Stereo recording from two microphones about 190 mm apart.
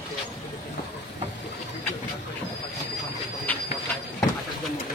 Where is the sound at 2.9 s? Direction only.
Centre (ahead or behind).